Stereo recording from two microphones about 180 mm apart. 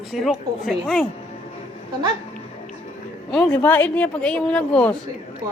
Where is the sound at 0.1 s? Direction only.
Centre (ahead or behind).